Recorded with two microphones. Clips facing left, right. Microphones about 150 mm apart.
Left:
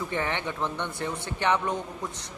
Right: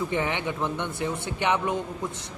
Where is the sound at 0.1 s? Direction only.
15° right (ahead or behind).